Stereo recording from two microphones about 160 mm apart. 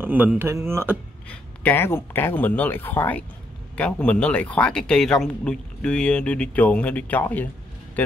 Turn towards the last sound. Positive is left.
turn(degrees=10)  # may be behind; listen again after turning